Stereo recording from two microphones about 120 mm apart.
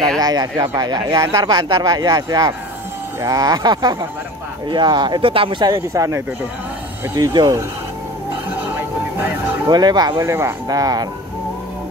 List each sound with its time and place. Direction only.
0.2 s speech: 35° right (ahead or behind)
9.7 s speech: 35° right (ahead or behind)